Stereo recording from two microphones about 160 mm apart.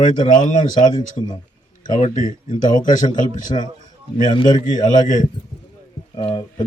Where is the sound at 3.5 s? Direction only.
35° left (ahead or behind).